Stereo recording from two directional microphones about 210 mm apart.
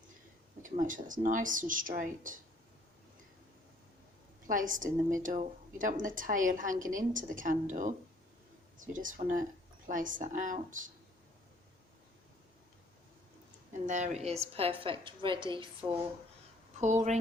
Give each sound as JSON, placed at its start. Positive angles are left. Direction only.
{"t": 0.6, "sound": "a woman's voice", "side_deg": -40}
{"t": 4.4, "sound": "a woman's voice", "side_deg": -40}
{"t": 13.8, "sound": "a woman's voice", "side_deg": -35}
{"t": 16.8, "sound": "a woman's voice", "side_deg": -35}